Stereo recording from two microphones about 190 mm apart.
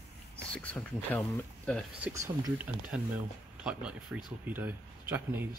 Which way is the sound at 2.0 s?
15° right (ahead or behind).